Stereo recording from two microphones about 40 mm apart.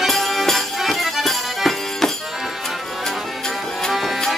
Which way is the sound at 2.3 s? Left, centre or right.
Centre.